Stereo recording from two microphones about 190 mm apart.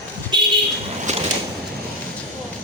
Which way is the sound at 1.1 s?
35° right (ahead or behind).